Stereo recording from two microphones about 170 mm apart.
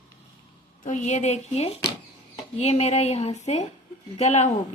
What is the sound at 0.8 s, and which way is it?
A woman's voice, 45° left (ahead or behind).